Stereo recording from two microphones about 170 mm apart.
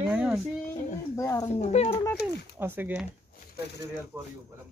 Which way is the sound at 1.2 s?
20° left (ahead or behind).